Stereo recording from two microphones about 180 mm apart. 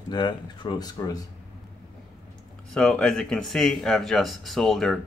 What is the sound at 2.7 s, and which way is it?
Speech, 5° left (ahead or behind).